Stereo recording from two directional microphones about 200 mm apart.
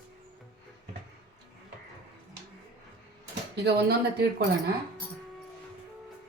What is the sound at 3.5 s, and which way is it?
Speech, 55° right (ahead or behind).